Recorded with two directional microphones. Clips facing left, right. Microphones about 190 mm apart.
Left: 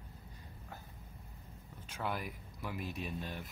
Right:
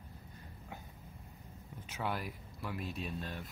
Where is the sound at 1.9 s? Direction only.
5° right (ahead or behind).